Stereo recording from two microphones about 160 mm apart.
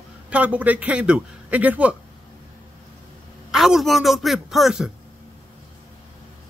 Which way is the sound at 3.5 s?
5° right (ahead or behind).